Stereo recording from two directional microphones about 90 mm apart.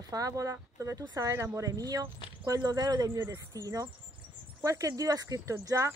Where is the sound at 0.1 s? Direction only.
40° right (ahead or behind).